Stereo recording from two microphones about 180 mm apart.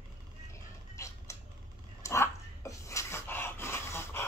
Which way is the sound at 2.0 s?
15° left (ahead or behind).